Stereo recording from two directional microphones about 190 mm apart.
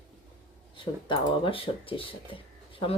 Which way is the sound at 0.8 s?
25° left (ahead or behind).